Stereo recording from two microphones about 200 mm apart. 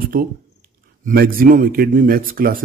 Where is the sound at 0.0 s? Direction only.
45° right (ahead or behind).